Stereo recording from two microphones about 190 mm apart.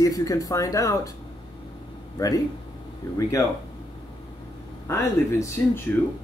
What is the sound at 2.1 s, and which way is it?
Speech, 20° left (ahead or behind).